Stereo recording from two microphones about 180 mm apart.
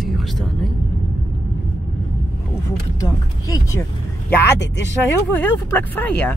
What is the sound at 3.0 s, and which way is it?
Speech, 20° left (ahead or behind).